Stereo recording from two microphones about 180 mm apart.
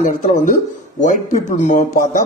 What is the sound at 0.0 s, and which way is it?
Speech, 45° left (ahead or behind).